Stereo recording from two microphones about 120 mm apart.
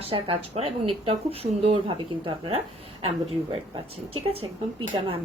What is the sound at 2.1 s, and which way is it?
Speech, 45° right (ahead or behind).